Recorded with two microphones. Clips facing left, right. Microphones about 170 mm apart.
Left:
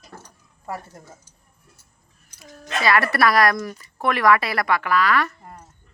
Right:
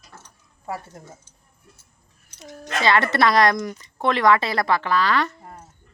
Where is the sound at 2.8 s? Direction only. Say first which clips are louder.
Even; 25° right (ahead or behind).